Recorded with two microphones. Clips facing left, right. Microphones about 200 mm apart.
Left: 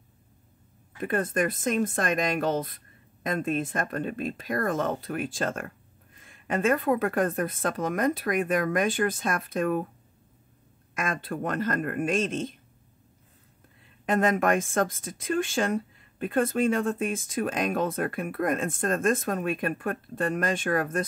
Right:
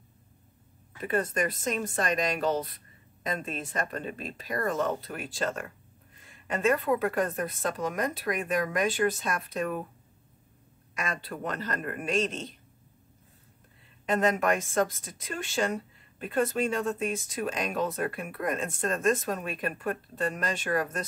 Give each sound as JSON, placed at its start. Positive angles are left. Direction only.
{"t": 1.0, "sound": "speech", "side_deg": 50}
{"t": 11.0, "sound": "speech", "side_deg": 50}
{"t": 14.0, "sound": "speech", "side_deg": 50}